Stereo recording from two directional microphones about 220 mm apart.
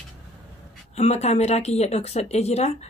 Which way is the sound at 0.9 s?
30° left (ahead or behind).